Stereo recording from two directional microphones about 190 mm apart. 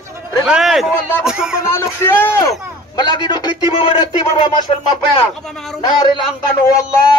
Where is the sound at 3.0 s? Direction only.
25° left (ahead or behind).